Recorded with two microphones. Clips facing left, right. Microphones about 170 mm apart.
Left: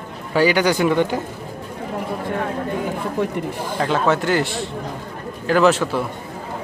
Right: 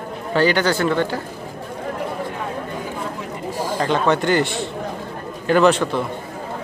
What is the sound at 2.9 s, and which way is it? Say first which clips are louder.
Speech: left 6 dB; 60° left (ahead or behind).